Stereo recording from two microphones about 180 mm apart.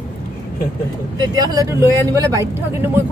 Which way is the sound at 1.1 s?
20° right (ahead or behind).